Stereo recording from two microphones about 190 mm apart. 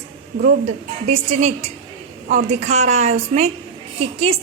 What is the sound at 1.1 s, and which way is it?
A woman's voice, 35° right (ahead or behind).